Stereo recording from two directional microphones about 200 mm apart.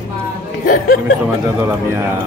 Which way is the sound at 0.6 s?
45° left (ahead or behind).